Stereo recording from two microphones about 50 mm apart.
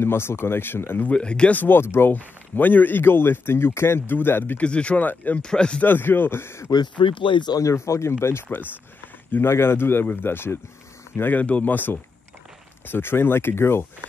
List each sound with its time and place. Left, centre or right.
0.0 s a man's voice: left
1.1 s speech: left
1.5 s a man's voice: left
4.6 s speech: left
5.0 s speech: left
5.4 s speech: centre
5.8 s a man's voice: left
7.6 s a man's voice: left